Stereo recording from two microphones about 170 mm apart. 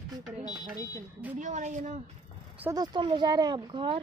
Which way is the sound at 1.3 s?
45° right (ahead or behind).